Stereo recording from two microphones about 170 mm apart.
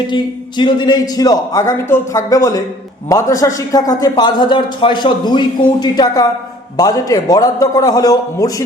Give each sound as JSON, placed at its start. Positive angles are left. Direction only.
{"t": 0.1, "sound": "a man's voice", "side_deg": 25}